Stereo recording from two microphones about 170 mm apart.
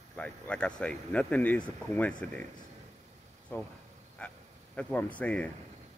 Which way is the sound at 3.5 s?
10° left (ahead or behind).